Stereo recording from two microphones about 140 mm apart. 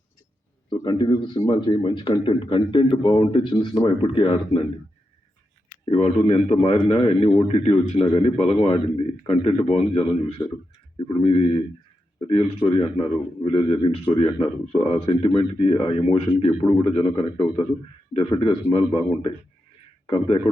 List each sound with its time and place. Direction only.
0.7 s speech: 35° left (ahead or behind)
6.0 s a man's voice: 50° left (ahead or behind)
12.6 s speech: 40° left (ahead or behind)